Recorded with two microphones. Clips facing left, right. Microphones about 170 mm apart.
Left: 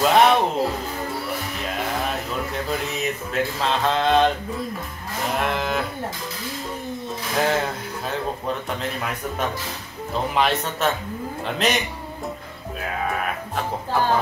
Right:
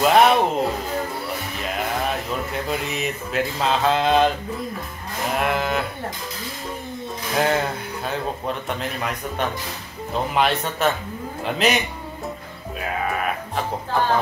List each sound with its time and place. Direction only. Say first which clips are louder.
0.0 s music: right 1 dB; centre (ahead or behind)
2.0 s speech: right 1 dB; 5° right (ahead or behind)
5.4 s speech: right 2 dB; centre (ahead or behind)
7.3 s speech: right 1 dB; centre (ahead or behind)
8.6 s speech: right 1 dB; centre (ahead or behind)
12.8 s speech: right 1 dB; centre (ahead or behind)